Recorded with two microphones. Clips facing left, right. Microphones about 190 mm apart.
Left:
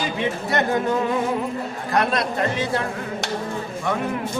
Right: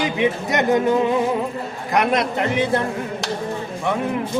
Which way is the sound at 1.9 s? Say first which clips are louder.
Right 3 dB; 20° right (ahead or behind).